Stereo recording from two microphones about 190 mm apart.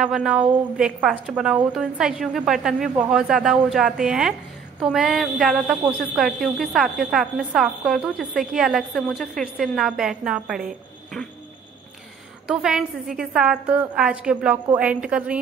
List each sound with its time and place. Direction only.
0.0 s a woman's voice: 5° right (ahead or behind)
12.4 s a woman's voice: centre (ahead or behind)